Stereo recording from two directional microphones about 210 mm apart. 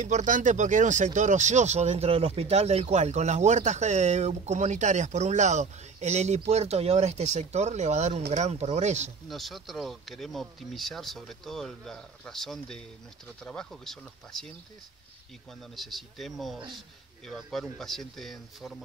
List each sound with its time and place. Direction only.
0.0 s speech: 35° right (ahead or behind)
9.3 s speech: centre (ahead or behind)
15.7 s speech: centre (ahead or behind)